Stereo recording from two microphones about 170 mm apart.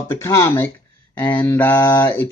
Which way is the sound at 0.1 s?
15° left (ahead or behind).